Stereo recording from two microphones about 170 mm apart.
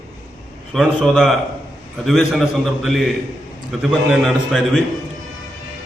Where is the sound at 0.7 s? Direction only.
Centre (ahead or behind).